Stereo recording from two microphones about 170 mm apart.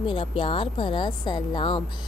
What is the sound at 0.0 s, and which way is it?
A woman's voice, 30° left (ahead or behind).